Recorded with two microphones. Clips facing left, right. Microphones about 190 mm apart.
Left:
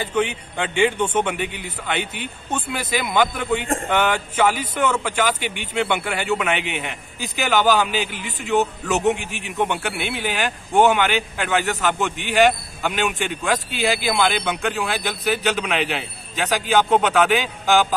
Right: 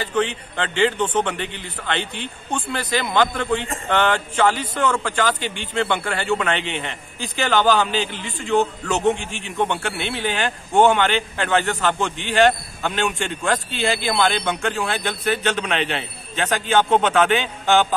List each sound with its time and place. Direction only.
0.1 s a man's voice: 10° left (ahead or behind)
9.6 s a man's voice: 5° left (ahead or behind)